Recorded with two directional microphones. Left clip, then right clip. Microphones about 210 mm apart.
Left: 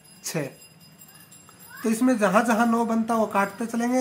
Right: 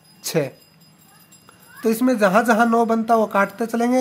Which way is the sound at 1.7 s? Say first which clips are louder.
Right 5 dB; 40° right (ahead or behind).